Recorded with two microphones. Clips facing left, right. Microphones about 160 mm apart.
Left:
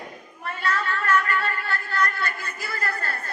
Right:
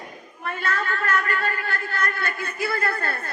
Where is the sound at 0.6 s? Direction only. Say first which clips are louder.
Left 1 dB; 45° right (ahead or behind); by 3.1 s 60° right (ahead or behind).